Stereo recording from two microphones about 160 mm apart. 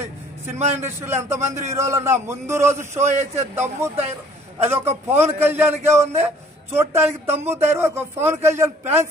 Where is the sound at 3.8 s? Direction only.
15° right (ahead or behind).